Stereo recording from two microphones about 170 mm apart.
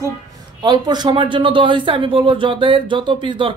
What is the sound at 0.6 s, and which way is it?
Speech, 25° right (ahead or behind).